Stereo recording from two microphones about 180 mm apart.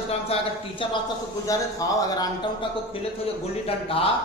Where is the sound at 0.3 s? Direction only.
35° left (ahead or behind).